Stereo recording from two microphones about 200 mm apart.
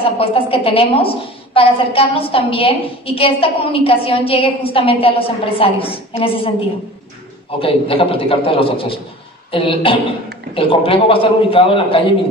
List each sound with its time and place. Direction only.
0.0 s a woman's voice: 25° left (ahead or behind)
7.5 s a woman's voice: 25° left (ahead or behind)